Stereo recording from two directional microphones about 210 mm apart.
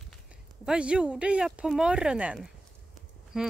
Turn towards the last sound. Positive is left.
turn(degrees=-5)  # may be behind; listen again after turning